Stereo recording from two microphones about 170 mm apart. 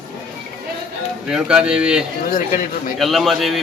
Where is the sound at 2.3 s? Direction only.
50° left (ahead or behind).